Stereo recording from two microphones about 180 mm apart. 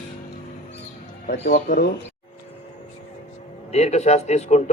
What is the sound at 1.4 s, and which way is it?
Speech, 55° left (ahead or behind).